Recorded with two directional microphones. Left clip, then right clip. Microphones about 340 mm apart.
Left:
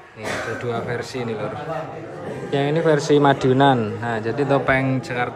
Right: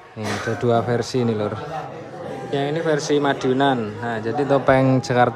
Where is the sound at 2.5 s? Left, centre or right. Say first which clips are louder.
Left 3 dB; centre.